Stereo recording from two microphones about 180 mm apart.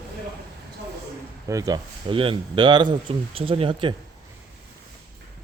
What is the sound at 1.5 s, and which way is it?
Speech, 20° right (ahead or behind).